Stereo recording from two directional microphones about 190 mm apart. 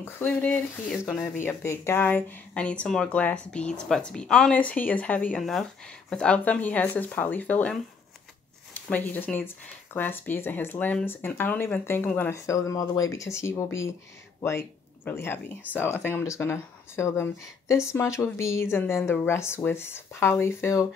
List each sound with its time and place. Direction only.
0.0 s speech: 10° left (ahead or behind)